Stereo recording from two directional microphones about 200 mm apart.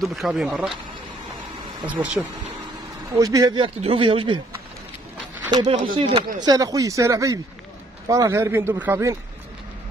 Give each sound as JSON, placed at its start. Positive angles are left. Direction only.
{"t": 0.0, "sound": "speech", "side_deg": 0}
{"t": 1.9, "sound": "speech", "side_deg": -5}
{"t": 5.5, "sound": "speech", "side_deg": -20}